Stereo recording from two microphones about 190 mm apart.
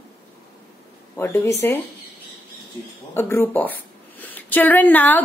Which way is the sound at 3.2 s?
10° left (ahead or behind).